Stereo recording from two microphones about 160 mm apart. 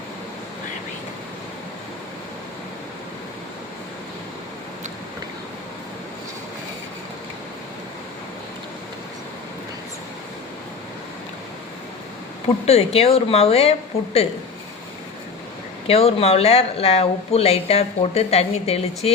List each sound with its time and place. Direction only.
12.6 s speech: 40° left (ahead or behind)
15.9 s speech: 40° left (ahead or behind)